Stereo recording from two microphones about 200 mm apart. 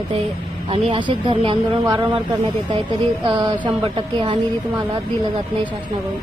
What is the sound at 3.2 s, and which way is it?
Speech, 25° right (ahead or behind).